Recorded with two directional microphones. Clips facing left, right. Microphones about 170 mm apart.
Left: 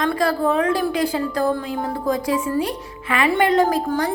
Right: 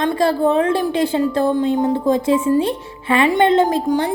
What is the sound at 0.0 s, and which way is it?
A woman's voice, 25° right (ahead or behind).